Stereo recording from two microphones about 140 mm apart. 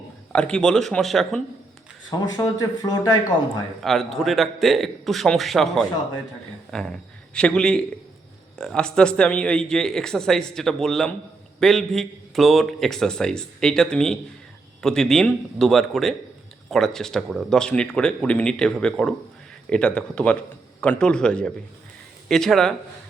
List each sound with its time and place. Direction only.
0.3 s speech: 5° left (ahead or behind)
2.0 s speech: 30° left (ahead or behind)
3.8 s speech: centre (ahead or behind)